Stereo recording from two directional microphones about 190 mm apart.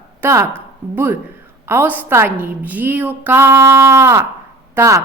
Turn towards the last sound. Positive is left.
turn(degrees=-15)  # may be behind; listen again after turning